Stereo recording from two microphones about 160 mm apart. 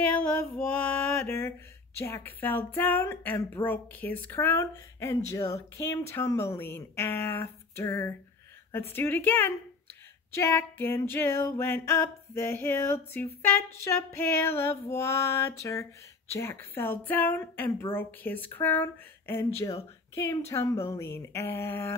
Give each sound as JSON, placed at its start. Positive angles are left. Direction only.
{"t": 0.2, "sound": "speech", "side_deg": 10}